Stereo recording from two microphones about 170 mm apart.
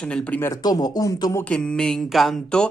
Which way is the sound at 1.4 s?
5° left (ahead or behind).